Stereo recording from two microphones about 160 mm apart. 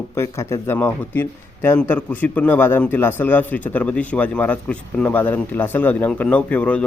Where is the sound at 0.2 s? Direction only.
15° left (ahead or behind).